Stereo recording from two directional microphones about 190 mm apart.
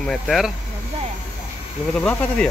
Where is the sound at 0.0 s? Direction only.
Centre (ahead or behind).